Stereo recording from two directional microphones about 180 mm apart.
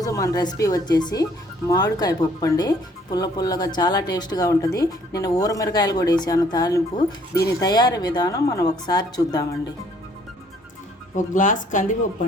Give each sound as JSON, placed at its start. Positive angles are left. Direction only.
{"t": 0.0, "sound": "speech", "side_deg": 20}
{"t": 11.3, "sound": "speech", "side_deg": 45}